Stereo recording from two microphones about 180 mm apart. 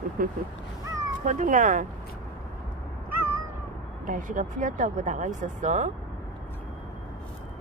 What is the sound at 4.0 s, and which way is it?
Speech, 45° right (ahead or behind).